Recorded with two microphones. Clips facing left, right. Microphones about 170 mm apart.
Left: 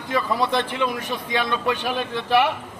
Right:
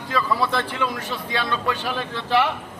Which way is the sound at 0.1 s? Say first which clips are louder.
Left 1 dB; 20° left (ahead or behind).